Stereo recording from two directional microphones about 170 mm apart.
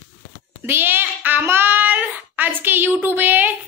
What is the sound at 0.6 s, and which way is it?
Child singing, 15° right (ahead or behind).